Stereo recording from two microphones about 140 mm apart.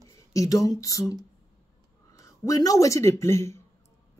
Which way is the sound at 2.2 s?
25° left (ahead or behind).